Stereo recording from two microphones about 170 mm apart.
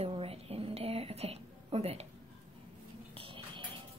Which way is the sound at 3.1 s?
35° right (ahead or behind).